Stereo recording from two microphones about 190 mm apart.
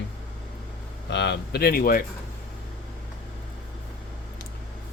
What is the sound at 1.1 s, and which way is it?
Speech, 65° left (ahead or behind).